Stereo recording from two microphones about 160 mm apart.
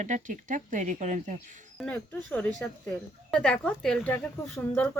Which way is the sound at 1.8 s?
10° left (ahead or behind).